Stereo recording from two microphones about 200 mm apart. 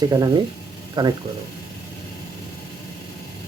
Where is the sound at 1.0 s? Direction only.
20° right (ahead or behind).